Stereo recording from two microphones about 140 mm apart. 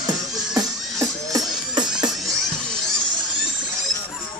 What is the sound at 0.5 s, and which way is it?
Music, 25° right (ahead or behind).